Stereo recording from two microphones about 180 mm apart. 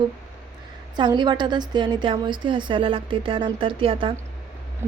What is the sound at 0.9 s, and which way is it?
A woman's voice, 25° right (ahead or behind).